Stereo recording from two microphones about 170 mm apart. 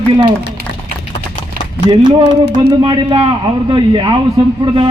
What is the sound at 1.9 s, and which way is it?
A man's voice, 30° right (ahead or behind).